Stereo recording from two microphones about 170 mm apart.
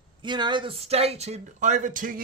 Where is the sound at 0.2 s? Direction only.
25° right (ahead or behind).